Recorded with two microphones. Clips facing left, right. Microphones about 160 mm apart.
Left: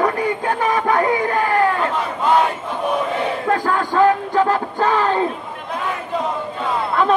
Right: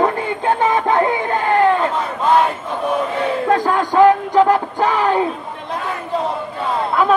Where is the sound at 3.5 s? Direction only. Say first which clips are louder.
Right 4 dB; 20° right (ahead or behind).